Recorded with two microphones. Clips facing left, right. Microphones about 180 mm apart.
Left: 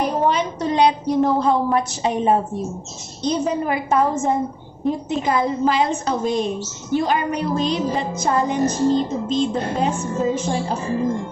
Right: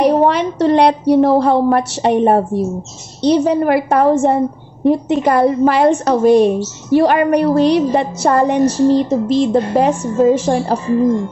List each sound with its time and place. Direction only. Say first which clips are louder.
0.0 s a woman's voice: right 7 dB; 70° right (ahead or behind)
4.8 s a woman's voice: right 8 dB; 70° right (ahead or behind)